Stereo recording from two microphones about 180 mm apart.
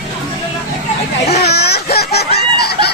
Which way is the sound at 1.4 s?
65° left (ahead or behind).